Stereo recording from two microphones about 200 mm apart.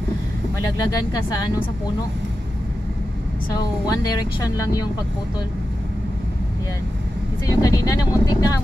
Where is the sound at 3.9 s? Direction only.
20° left (ahead or behind).